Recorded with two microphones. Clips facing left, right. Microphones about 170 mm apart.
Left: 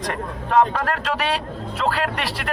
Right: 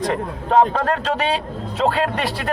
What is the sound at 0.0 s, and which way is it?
Speech, 25° right (ahead or behind).